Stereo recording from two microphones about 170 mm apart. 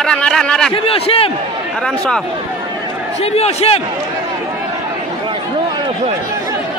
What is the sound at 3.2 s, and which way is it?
Speech, 35° left (ahead or behind).